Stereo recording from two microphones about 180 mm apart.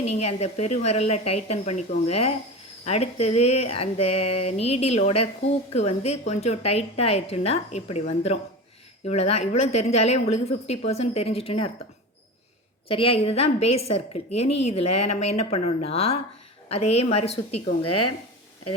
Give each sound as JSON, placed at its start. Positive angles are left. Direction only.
{"t": 0.0, "sound": "speech", "side_deg": 35}
{"t": 12.9, "sound": "speech", "side_deg": 30}